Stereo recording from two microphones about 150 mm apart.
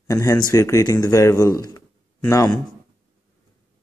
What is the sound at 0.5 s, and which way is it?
Speech, 20° left (ahead or behind).